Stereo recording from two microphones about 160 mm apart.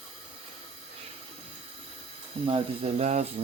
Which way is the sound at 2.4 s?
35° right (ahead or behind).